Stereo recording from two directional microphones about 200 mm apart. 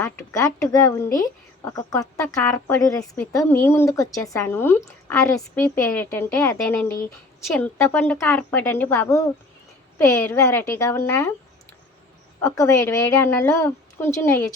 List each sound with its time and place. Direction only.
0.0 s a woman's voice: 15° left (ahead or behind)
12.4 s a woman's voice: 15° left (ahead or behind)